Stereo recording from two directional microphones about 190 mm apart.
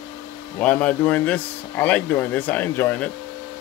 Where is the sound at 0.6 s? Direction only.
5° left (ahead or behind).